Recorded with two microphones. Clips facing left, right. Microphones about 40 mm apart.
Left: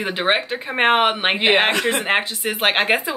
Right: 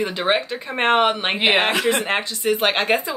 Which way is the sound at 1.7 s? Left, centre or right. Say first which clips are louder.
Even; centre.